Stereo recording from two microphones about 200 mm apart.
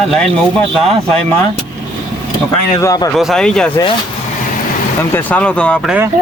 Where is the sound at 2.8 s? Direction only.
20° left (ahead or behind).